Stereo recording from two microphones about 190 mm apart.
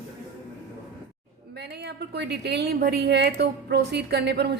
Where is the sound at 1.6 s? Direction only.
60° right (ahead or behind).